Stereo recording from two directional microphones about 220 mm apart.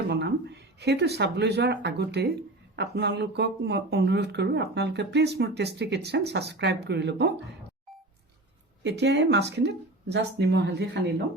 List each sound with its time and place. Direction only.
0.1 s speech: 50° right (ahead or behind)
8.8 s speech: 50° right (ahead or behind)